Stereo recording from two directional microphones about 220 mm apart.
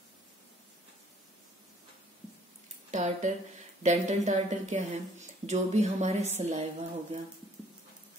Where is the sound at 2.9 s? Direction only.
35° right (ahead or behind).